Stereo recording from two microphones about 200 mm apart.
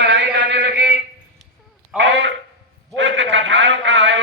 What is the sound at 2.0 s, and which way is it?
Speech, 65° right (ahead or behind).